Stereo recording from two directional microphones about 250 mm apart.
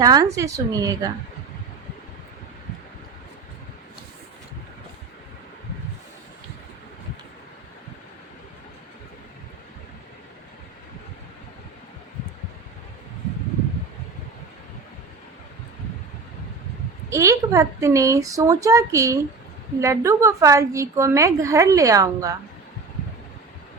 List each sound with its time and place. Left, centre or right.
0.0 s a woman's voice: centre
17.1 s a woman's voice: centre